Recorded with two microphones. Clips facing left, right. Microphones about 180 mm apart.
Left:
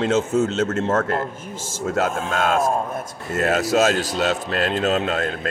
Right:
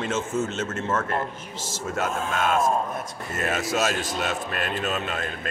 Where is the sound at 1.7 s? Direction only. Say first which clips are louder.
Left 6 dB; 50° left (ahead or behind).